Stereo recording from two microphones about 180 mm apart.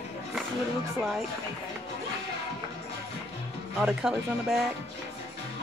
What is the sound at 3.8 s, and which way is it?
Speech, 5° right (ahead or behind).